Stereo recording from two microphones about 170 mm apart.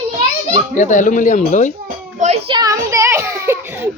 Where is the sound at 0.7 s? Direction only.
45° left (ahead or behind).